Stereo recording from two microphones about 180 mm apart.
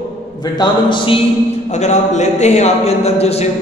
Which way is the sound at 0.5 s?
25° left (ahead or behind).